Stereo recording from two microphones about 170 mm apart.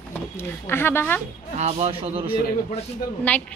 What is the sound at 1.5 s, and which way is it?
Speech, 35° right (ahead or behind).